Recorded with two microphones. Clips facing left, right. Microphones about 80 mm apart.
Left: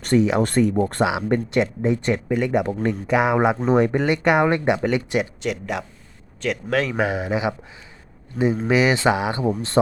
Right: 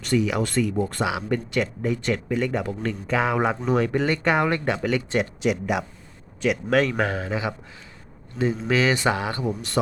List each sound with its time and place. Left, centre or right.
0.2 s speech: left
0.4 s speech: left
1.0 s speech: left
3.6 s speech: left
5.4 s speech: centre
6.9 s speech: centre
8.6 s speech: centre